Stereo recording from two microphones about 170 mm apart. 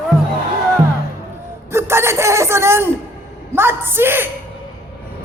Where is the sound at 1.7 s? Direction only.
15° right (ahead or behind).